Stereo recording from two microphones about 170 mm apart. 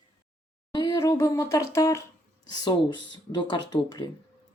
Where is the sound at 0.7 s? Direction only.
25° left (ahead or behind).